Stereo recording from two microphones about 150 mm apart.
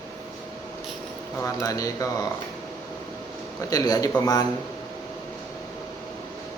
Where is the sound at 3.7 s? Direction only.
25° left (ahead or behind).